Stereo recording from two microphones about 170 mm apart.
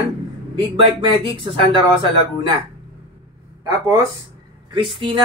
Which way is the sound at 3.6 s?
20° right (ahead or behind).